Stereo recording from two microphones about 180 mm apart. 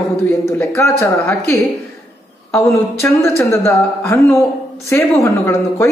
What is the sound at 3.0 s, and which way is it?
Speech, 15° left (ahead or behind).